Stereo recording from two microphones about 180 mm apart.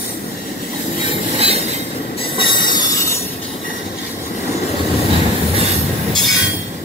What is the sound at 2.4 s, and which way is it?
Train wheels squealing, 25° left (ahead or behind).